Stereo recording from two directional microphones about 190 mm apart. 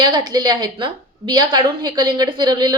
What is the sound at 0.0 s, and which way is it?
A woman's voice, 20° right (ahead or behind).